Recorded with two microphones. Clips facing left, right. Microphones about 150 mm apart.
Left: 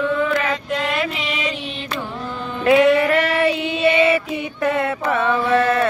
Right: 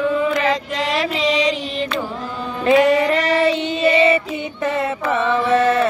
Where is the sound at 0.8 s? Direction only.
90° right.